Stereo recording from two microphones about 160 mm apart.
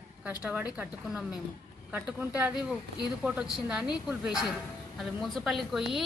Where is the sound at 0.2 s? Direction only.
10° right (ahead or behind).